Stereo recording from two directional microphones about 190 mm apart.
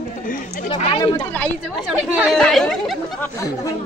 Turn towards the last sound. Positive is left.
turn(degrees=0)  # may be behind; listen again after turning